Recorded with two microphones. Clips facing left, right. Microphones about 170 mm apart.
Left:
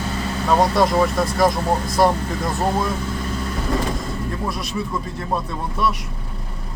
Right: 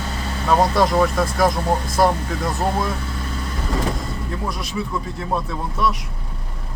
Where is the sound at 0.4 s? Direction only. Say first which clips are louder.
Even; centre (ahead or behind).